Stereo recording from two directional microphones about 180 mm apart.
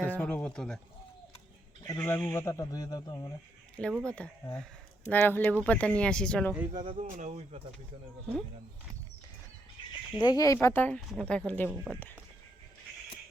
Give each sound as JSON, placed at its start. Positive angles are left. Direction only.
{"t": 0.0, "sound": "a sound", "side_deg": 5}
{"t": 1.8, "sound": "speech", "side_deg": 15}
{"t": 3.8, "sound": "speech", "side_deg": 5}
{"t": 6.9, "sound": "speech", "side_deg": -40}
{"t": 10.2, "sound": "speech", "side_deg": 20}